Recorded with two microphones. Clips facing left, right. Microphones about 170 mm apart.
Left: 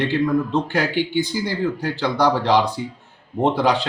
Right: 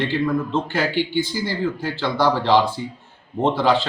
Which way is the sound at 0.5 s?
15° left (ahead or behind).